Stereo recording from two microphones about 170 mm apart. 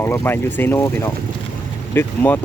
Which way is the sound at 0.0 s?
15° left (ahead or behind).